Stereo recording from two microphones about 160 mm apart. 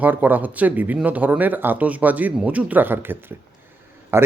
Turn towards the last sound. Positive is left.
turn(degrees=-15)  # may be behind; listen again after turning